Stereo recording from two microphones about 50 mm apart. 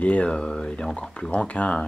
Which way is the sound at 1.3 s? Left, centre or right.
Left.